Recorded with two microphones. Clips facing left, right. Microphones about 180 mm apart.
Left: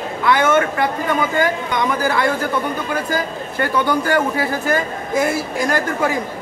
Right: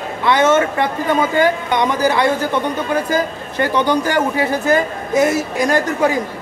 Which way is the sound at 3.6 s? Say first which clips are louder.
Right 3 dB; 20° right (ahead or behind).